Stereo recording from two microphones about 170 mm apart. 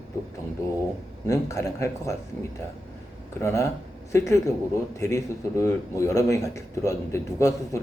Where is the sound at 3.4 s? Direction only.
15° left (ahead or behind).